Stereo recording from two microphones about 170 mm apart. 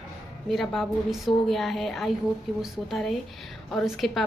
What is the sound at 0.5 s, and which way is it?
A woman's voice, centre (ahead or behind).